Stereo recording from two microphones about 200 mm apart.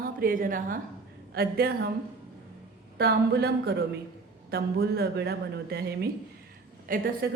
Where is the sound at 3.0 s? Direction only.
55° right (ahead or behind).